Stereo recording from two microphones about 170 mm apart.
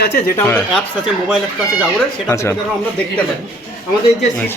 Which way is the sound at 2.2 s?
15° left (ahead or behind).